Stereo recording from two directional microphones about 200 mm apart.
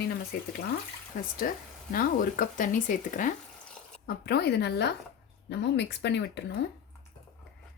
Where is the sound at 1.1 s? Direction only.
45° left (ahead or behind).